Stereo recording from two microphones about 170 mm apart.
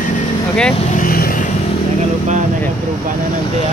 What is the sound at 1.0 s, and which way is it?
Vehicle, 55° left (ahead or behind).